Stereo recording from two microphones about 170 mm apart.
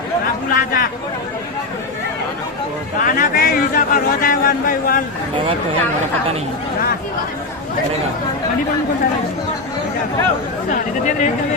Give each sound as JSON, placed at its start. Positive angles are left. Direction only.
{"t": 0.5, "sound": "a man's voice", "side_deg": 55}
{"t": 3.0, "sound": "a man's voice", "side_deg": 55}
{"t": 10.7, "sound": "speech", "side_deg": 50}